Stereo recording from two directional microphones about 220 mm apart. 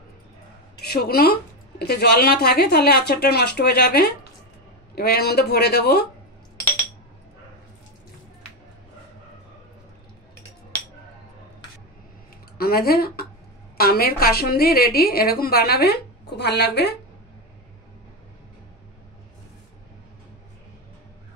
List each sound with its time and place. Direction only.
0.7 s a woman's voice: 45° left (ahead or behind)
12.5 s a woman's voice: 45° left (ahead or behind)